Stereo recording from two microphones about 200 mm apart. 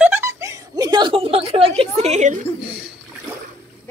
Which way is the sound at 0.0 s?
10° right (ahead or behind).